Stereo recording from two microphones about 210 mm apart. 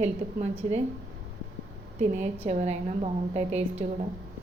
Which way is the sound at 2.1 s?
30° right (ahead or behind).